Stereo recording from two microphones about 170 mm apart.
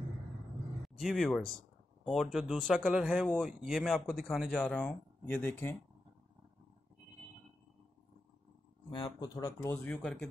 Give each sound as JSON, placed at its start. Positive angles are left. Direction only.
{"t": 0.8, "sound": "speech", "side_deg": 0}
{"t": 8.9, "sound": "speech", "side_deg": 25}